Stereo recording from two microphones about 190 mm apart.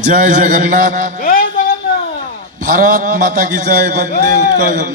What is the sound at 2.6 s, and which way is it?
A man's voice, 45° right (ahead or behind).